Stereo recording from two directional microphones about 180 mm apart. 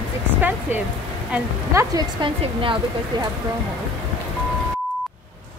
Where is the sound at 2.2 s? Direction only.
30° right (ahead or behind).